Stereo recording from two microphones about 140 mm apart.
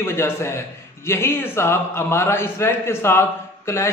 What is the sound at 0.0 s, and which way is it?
A man's voice, 20° left (ahead or behind).